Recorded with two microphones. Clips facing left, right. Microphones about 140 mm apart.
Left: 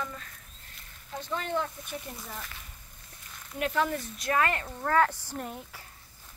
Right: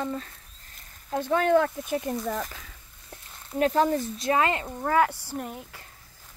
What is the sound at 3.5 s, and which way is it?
Speech, 35° right (ahead or behind).